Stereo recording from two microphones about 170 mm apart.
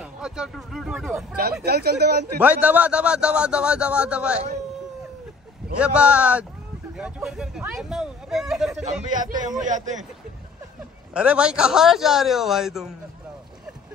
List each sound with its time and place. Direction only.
0.0 s speech: 5° right (ahead or behind)
1.3 s speech: 65° right (ahead or behind)
2.4 s a man's voice: 10° right (ahead or behind)
5.8 s a man's voice: 5° right (ahead or behind)
9.1 s a man's voice: 50° right (ahead or behind)
11.1 s speech: 5° right (ahead or behind)